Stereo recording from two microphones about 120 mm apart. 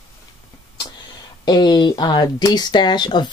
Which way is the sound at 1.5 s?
35° left (ahead or behind).